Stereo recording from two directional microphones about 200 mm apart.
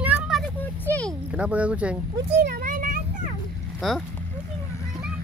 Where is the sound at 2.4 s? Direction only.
40° right (ahead or behind).